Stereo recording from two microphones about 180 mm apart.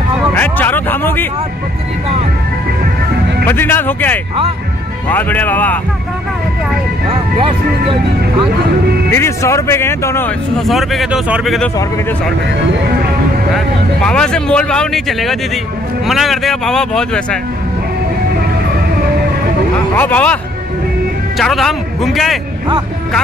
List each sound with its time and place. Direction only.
0.3 s a sound: 10° left (ahead or behind)
3.4 s speech: 10° left (ahead or behind)
7.1 s speech: 30° right (ahead or behind)
9.1 s speech: 15° left (ahead or behind)
10.6 s speech: centre (ahead or behind)
14.0 s speech: 5° left (ahead or behind)
20.0 s speech: 10° left (ahead or behind)
21.4 s speech: centre (ahead or behind)